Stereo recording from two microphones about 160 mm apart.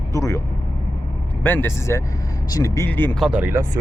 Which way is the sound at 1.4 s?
10° left (ahead or behind).